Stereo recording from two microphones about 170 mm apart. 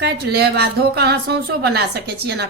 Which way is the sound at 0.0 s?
75° right (ahead or behind).